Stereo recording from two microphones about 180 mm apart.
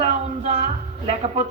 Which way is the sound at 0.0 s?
40° right (ahead or behind).